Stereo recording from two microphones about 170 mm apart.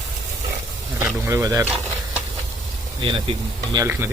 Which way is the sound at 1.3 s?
20° right (ahead or behind).